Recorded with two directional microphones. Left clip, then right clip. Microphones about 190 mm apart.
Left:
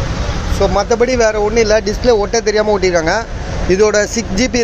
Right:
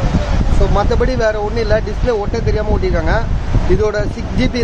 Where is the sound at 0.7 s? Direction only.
15° left (ahead or behind).